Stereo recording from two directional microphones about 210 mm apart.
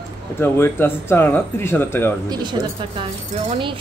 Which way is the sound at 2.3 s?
20° right (ahead or behind).